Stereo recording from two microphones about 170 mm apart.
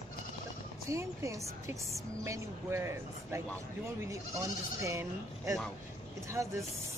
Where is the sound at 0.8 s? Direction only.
15° right (ahead or behind).